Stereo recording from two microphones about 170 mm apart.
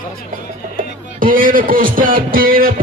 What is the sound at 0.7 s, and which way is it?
Speech, 55° right (ahead or behind).